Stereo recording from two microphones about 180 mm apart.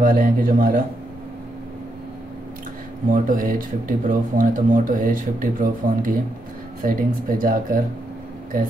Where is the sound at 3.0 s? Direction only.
50° right (ahead or behind).